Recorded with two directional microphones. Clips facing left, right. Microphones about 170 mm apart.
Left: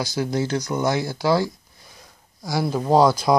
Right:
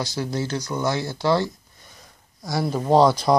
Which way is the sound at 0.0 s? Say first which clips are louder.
Left 3 dB; 10° left (ahead or behind).